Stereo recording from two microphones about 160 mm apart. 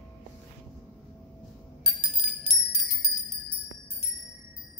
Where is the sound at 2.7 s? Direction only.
Centre (ahead or behind).